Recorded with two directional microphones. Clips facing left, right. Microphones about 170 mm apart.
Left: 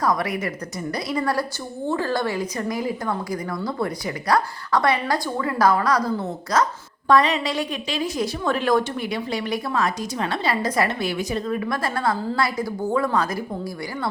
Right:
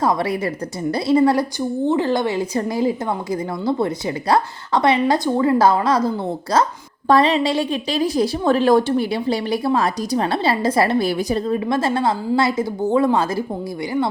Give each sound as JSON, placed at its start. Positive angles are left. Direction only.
{"t": 0.0, "sound": "a woman's voice", "side_deg": -25}